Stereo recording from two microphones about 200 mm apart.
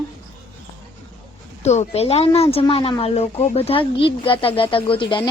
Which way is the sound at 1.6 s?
35° left (ahead or behind).